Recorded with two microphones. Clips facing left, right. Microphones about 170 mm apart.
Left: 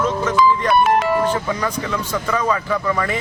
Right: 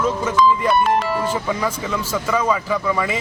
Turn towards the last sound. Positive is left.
turn(degrees=-10)  # may be behind; listen again after turning